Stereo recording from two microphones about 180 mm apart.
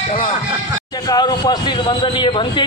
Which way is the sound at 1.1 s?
20° left (ahead or behind).